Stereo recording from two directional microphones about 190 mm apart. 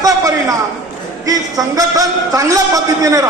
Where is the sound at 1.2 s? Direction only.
20° right (ahead or behind).